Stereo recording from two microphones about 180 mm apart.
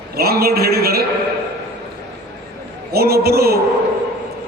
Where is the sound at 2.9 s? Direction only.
60° right (ahead or behind).